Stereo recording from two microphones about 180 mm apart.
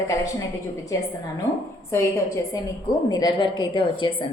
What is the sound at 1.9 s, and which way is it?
A woman's voice, 15° left (ahead or behind).